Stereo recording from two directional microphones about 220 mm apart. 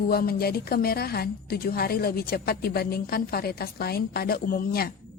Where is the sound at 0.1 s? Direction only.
45° left (ahead or behind).